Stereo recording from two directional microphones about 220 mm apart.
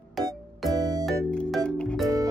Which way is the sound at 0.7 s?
15° right (ahead or behind).